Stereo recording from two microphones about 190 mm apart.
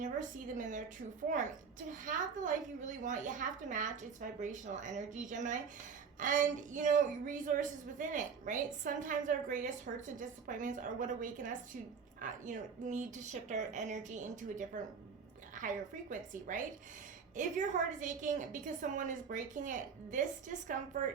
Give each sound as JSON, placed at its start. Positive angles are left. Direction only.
{"t": 0.0, "sound": "a woman's voice", "side_deg": -40}